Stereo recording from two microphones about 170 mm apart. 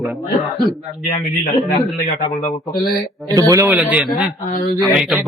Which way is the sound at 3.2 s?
20° right (ahead or behind).